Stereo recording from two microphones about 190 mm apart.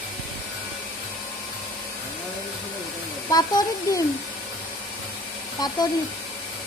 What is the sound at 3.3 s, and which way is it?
Speech, 20° left (ahead or behind).